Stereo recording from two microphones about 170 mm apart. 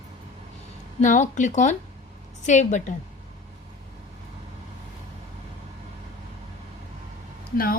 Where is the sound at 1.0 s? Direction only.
45° left (ahead or behind).